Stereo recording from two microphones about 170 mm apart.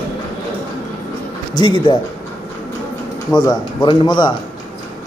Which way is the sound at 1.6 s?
30° left (ahead or behind).